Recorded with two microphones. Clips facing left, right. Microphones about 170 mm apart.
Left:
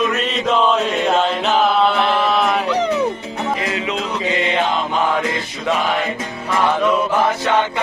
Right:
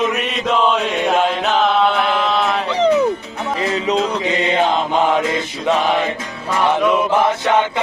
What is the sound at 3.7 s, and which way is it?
Music, 40° right (ahead or behind).